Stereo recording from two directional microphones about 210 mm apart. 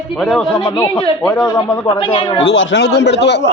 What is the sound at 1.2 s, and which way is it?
Speech, 5° left (ahead or behind).